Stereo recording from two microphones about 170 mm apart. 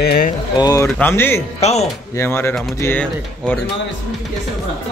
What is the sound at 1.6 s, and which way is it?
Speech, 40° left (ahead or behind).